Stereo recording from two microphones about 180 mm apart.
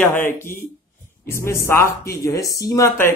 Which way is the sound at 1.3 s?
15° left (ahead or behind).